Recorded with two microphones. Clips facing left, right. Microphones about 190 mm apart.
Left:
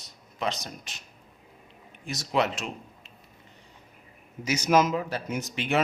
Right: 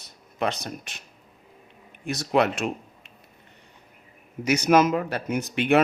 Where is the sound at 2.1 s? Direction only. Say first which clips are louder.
Right 5 dB; 60° right (ahead or behind).